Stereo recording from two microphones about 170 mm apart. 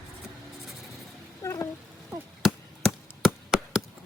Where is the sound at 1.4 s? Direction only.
20° left (ahead or behind).